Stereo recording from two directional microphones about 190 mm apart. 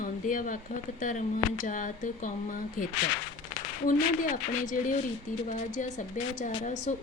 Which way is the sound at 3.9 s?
45° left (ahead or behind).